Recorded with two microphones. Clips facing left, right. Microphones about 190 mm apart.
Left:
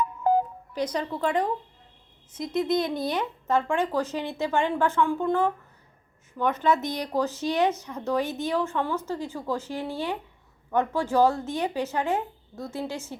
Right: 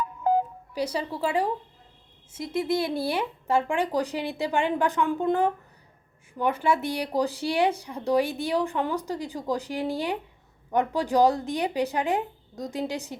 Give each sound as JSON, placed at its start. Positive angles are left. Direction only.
{"t": 0.7, "sound": "speech", "side_deg": -10}